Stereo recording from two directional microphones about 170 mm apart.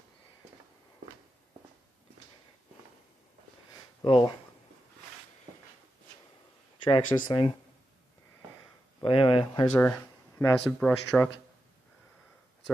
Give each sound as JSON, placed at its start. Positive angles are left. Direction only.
{"t": 4.0, "sound": "speech", "side_deg": 30}
{"t": 6.8, "sound": "speech", "side_deg": 25}
{"t": 9.0, "sound": "speech", "side_deg": 30}
{"t": 9.8, "sound": "speech", "side_deg": 10}